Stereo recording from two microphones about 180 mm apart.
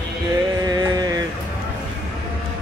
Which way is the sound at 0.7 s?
20° right (ahead or behind).